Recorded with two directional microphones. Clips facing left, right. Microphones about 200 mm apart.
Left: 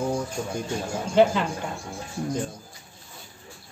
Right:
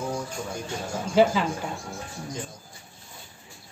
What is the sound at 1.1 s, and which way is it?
Speech, 5° right (ahead or behind).